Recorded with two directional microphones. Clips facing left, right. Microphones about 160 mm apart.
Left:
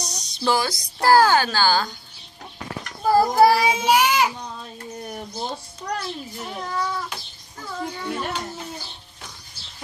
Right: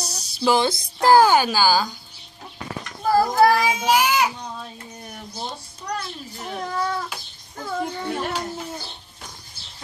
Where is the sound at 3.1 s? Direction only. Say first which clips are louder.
Left 1 dB; 15° left (ahead or behind).